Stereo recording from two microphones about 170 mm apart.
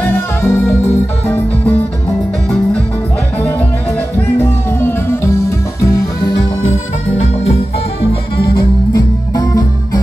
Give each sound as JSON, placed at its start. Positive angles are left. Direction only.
{"t": 0.0, "sound": "music", "side_deg": 15}
{"t": 4.4, "sound": "music", "side_deg": 15}
{"t": 8.9, "sound": "music", "side_deg": 20}